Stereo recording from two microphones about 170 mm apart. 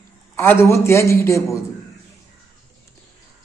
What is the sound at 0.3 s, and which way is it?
Speech, 15° left (ahead or behind).